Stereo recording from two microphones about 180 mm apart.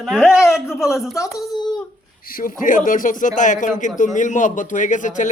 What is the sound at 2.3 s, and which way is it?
A man's voice, 50° left (ahead or behind).